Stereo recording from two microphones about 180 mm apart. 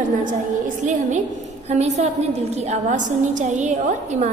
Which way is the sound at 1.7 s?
40° right (ahead or behind).